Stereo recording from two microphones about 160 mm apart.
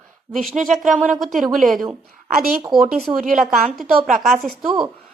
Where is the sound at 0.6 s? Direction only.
50° right (ahead or behind).